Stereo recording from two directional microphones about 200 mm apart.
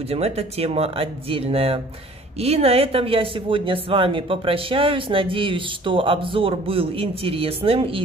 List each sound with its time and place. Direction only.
0.1 s speech: 30° right (ahead or behind)